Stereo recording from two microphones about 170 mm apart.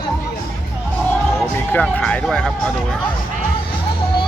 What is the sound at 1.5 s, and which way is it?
Speech, 10° left (ahead or behind).